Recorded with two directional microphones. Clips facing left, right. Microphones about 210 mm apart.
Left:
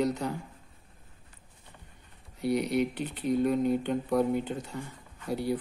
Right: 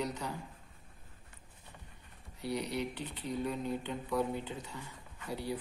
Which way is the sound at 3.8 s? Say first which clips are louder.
Left 7 dB; 50° left (ahead or behind).